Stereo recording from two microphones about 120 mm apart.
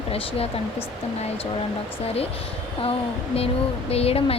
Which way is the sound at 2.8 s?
55° left (ahead or behind).